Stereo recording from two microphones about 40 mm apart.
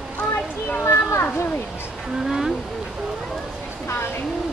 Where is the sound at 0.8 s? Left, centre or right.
Left.